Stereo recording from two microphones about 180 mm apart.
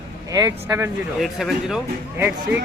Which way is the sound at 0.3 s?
20° right (ahead or behind).